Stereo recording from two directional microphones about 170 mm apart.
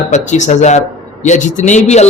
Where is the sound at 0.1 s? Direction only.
45° left (ahead or behind).